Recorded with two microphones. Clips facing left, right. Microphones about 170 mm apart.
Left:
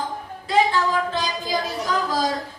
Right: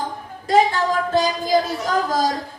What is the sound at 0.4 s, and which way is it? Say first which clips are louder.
Speech: right 3 dB; 45° right (ahead or behind).